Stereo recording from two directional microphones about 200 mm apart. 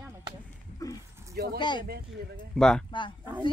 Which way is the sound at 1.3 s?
50° right (ahead or behind).